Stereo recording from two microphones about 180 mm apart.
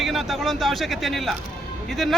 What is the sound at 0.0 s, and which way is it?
A man's voice, centre (ahead or behind).